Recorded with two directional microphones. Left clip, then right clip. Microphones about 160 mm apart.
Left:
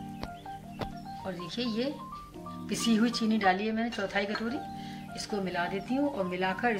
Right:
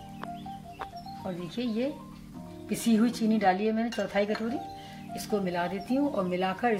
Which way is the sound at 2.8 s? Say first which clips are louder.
Right 2 dB; 55° right (ahead or behind).